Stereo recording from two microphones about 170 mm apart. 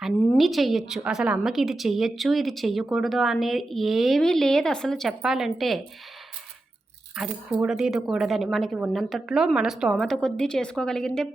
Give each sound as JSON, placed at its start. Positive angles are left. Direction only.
{"t": 0.0, "sound": "a woman's voice", "side_deg": 0}
{"t": 7.5, "sound": "a woman's voice", "side_deg": -5}